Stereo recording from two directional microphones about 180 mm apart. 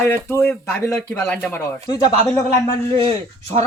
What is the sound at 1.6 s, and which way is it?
Speech, 20° left (ahead or behind).